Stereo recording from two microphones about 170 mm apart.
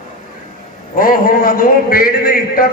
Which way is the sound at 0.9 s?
55° left (ahead or behind).